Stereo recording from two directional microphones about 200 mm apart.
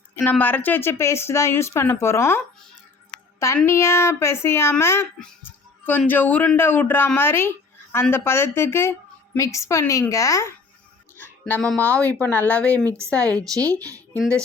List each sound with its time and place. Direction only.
0.2 s speech: 10° left (ahead or behind)
3.6 s speech: 15° left (ahead or behind)
12.8 s a woman's voice: 15° right (ahead or behind)
13.3 s speech: 5° left (ahead or behind)